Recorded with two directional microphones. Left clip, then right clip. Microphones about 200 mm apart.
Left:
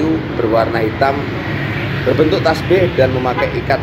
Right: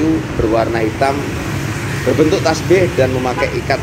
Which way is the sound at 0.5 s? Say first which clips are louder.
Left 1 dB; 20° right (ahead or behind).